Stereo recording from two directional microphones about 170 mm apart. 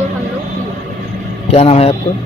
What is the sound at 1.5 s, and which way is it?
Speech, 35° left (ahead or behind).